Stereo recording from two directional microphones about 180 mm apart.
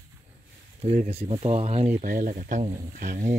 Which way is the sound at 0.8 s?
40° right (ahead or behind).